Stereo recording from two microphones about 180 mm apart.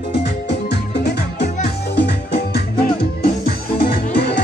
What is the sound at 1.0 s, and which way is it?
Music, 65° left (ahead or behind).